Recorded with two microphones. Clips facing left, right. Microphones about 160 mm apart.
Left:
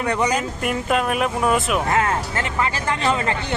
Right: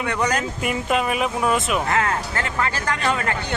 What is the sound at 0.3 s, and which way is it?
Speech, centre (ahead or behind).